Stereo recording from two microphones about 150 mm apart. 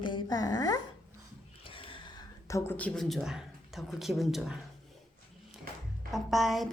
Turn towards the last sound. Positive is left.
turn(degrees=0)  # may be behind; listen again after turning